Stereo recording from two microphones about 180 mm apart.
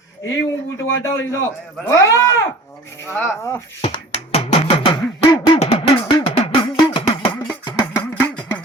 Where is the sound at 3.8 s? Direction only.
35° left (ahead or behind).